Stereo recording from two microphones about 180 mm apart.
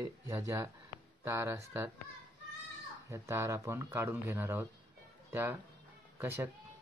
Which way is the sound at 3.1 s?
15° right (ahead or behind).